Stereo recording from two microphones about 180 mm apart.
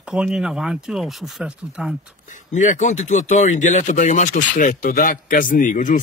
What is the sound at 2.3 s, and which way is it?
Speech, 45° left (ahead or behind).